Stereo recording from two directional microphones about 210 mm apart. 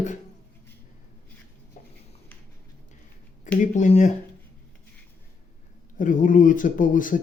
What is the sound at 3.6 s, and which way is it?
Speech, 35° left (ahead or behind).